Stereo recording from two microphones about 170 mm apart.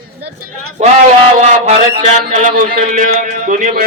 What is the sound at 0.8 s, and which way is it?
Speech, 45° right (ahead or behind).